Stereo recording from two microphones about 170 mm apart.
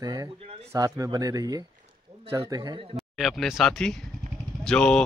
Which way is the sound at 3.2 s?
Centre (ahead or behind).